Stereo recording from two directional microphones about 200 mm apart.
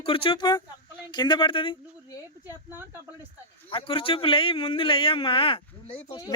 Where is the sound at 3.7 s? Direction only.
25° left (ahead or behind).